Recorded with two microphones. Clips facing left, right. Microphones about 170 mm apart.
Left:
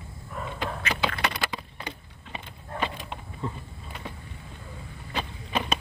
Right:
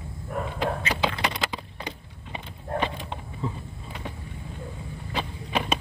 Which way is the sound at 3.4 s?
Centre (ahead or behind).